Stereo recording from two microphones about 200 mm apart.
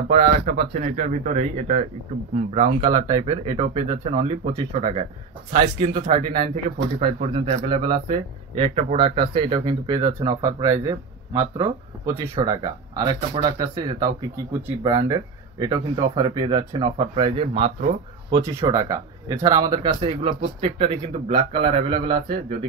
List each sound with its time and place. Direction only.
0.1 s speech: 40° right (ahead or behind)
6.4 s speech: 30° right (ahead or behind)
18.7 s speech: 15° right (ahead or behind)